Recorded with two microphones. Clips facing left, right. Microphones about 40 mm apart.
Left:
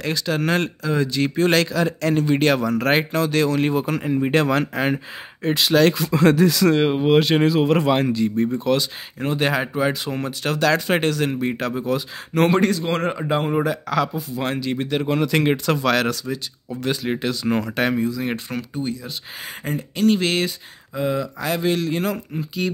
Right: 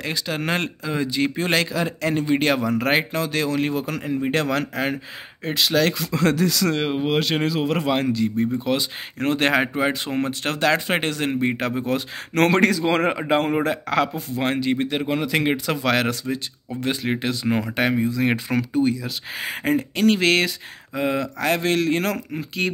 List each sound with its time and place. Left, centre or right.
0.0 s speech: centre
3.6 s speech: centre
9.2 s speech: right
9.8 s speech: right
12.4 s speech: right
13.1 s speech: right
14.4 s speech: right
14.9 s speech: centre
16.8 s speech: right
17.5 s speech: centre
18.5 s speech: right
22.6 s speech: right